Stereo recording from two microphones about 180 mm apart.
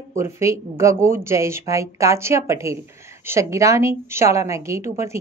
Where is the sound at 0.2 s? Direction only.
15° right (ahead or behind).